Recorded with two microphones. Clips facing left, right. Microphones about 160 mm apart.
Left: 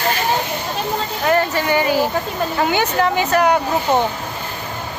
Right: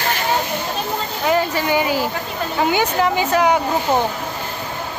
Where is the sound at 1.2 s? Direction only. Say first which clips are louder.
Left 1 dB; 10° right (ahead or behind).